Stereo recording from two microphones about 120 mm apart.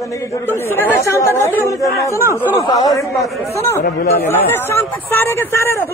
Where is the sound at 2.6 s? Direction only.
30° left (ahead or behind).